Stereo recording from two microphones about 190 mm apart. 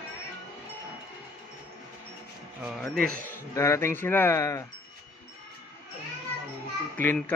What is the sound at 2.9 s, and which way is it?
Speech, 50° right (ahead or behind).